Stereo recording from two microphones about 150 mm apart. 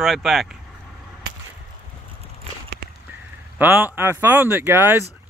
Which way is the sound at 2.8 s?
90° right.